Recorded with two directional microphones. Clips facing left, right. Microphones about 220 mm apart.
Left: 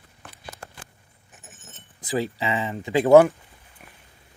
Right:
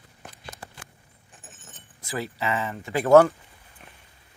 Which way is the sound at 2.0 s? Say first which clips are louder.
Left 4 dB; 15° left (ahead or behind).